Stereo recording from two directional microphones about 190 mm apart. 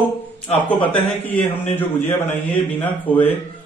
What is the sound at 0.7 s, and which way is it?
A man's voice, 10° left (ahead or behind).